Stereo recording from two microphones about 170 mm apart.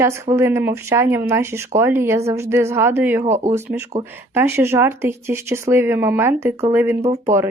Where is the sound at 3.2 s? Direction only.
45° right (ahead or behind).